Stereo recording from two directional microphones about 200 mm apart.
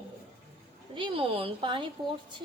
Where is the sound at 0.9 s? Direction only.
25° right (ahead or behind).